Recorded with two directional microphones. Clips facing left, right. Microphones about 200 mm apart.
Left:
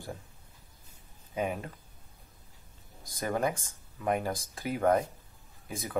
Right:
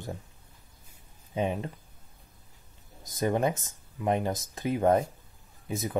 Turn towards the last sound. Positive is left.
turn(degrees=-20)  # may be behind; listen again after turning